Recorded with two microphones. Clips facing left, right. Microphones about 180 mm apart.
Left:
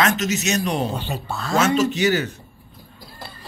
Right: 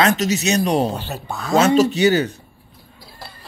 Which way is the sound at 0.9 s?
5° right (ahead or behind).